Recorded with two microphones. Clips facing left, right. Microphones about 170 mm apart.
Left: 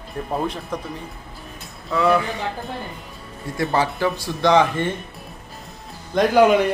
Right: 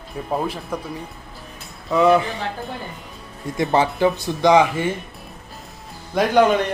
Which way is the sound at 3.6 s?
20° right (ahead or behind).